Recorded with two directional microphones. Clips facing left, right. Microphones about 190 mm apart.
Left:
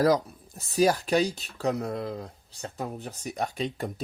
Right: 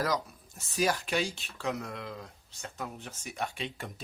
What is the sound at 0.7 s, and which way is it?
Speech, 35° left (ahead or behind).